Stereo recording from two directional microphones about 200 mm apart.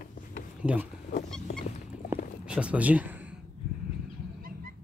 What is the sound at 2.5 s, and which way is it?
Speech, 5° right (ahead or behind).